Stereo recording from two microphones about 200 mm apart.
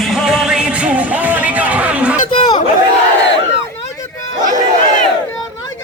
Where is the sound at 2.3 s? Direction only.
25° left (ahead or behind).